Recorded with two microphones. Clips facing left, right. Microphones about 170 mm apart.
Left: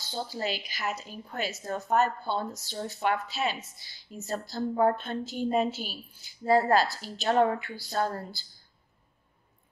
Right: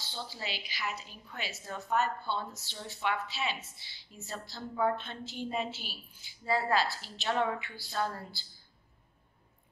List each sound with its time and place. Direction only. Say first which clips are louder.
0.0 s a woman's voice: left 8 dB; 45° left (ahead or behind)